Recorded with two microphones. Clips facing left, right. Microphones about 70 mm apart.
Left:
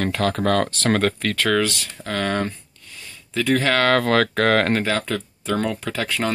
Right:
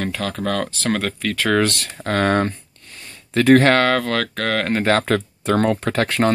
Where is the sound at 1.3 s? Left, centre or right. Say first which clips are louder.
Right 5 dB; centre.